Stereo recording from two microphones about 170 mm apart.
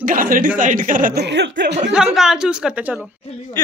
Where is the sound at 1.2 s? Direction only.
90° right.